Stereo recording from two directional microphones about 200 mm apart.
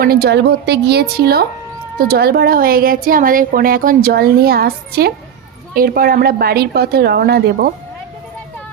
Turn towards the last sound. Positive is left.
turn(degrees=-50)  # may be behind; listen again after turning